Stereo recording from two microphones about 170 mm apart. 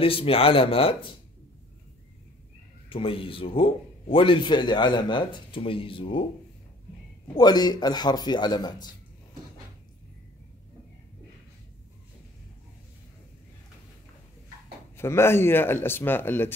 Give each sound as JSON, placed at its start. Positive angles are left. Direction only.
{"t": 0.0, "sound": "a man's voice", "side_deg": 35}
{"t": 2.9, "sound": "a man's voice", "side_deg": 30}
{"t": 7.3, "sound": "speech", "side_deg": 25}
{"t": 15.0, "sound": "speech", "side_deg": 15}